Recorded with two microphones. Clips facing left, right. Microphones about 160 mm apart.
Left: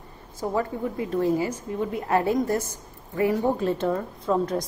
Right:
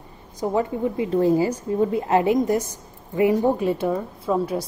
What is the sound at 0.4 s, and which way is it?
A woman's voice, 15° right (ahead or behind).